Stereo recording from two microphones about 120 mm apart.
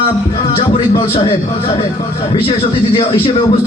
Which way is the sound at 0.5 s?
55° left (ahead or behind).